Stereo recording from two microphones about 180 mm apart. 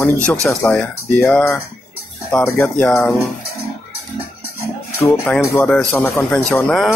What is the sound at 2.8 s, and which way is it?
Speech, 5° left (ahead or behind).